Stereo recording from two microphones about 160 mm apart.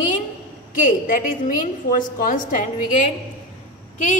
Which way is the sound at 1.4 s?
55° left (ahead or behind).